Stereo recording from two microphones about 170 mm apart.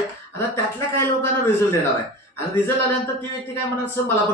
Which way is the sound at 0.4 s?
15° left (ahead or behind).